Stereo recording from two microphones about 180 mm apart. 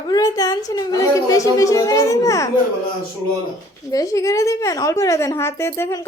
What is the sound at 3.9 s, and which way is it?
A woman's voice, 20° left (ahead or behind).